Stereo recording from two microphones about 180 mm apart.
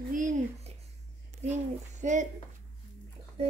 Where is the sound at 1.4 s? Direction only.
35° right (ahead or behind).